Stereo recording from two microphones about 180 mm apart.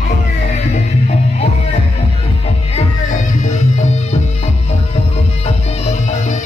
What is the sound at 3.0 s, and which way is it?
Music, 45° left (ahead or behind).